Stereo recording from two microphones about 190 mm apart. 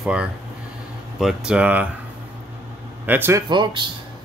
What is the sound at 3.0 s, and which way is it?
Speech, 10° right (ahead or behind).